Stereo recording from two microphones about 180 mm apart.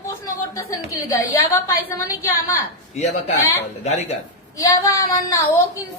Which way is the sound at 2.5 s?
40° left (ahead or behind).